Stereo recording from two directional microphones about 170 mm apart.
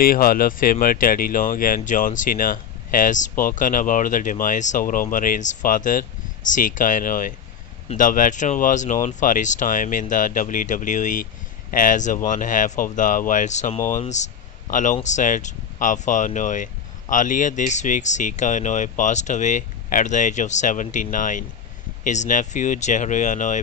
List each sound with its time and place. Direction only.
0.0 s speech: 60° left (ahead or behind)